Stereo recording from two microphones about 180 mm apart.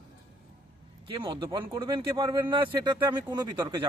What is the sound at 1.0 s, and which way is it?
Speech, 25° right (ahead or behind).